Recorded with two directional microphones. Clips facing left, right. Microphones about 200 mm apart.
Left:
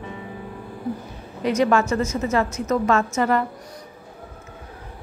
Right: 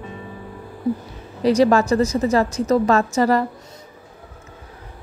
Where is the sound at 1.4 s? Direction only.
35° right (ahead or behind).